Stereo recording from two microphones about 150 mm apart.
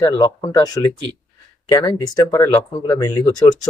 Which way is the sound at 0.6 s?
25° left (ahead or behind).